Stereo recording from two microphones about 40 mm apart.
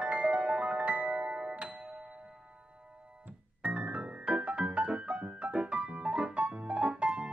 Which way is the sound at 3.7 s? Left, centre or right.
Right.